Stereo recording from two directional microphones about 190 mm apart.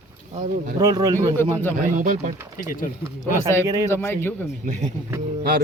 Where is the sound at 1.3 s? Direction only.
10° left (ahead or behind).